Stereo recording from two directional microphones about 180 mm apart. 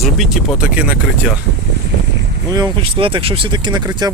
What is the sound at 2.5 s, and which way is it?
Speech, 25° right (ahead or behind).